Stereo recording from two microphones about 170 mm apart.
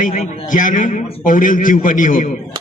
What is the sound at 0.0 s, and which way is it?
A man's voice, 45° left (ahead or behind).